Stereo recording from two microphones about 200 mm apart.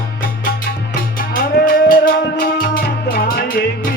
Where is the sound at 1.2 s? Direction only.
45° left (ahead or behind).